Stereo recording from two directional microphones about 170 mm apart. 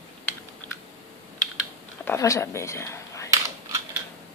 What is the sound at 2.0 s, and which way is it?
Speech, 15° left (ahead or behind).